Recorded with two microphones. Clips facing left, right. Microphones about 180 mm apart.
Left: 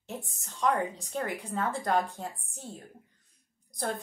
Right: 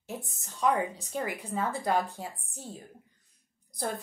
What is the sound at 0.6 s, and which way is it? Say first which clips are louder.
A woman's voice: right 1 dB; 5° right (ahead or behind).